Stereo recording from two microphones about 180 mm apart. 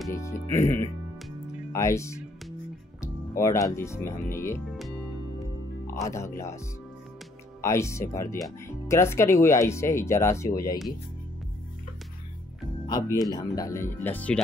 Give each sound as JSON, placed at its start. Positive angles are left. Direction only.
{"t": 0.1, "sound": "speech", "side_deg": 15}
{"t": 4.6, "sound": "music", "side_deg": 0}
{"t": 5.9, "sound": "speech", "side_deg": 15}
{"t": 7.6, "sound": "speech", "side_deg": 15}
{"t": 12.8, "sound": "speech", "side_deg": 20}